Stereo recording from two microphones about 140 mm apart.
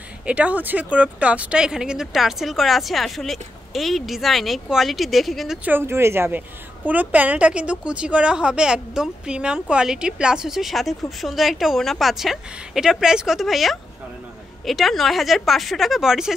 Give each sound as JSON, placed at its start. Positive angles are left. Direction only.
{"t": 0.2, "sound": "a woman's voice", "side_deg": -10}
{"t": 5.7, "sound": "a woman's voice", "side_deg": -15}